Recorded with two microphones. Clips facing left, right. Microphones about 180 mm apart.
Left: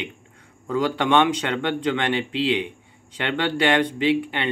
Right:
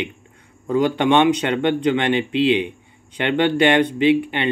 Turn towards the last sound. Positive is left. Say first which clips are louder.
# right 5 dB
turn(degrees=-20)  # may be behind; listen again after turning